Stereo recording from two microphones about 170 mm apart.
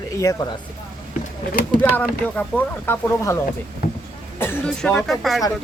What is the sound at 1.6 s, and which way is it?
Speech, 60° left (ahead or behind).